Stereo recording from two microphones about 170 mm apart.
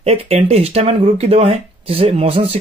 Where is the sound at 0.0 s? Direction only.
35° right (ahead or behind).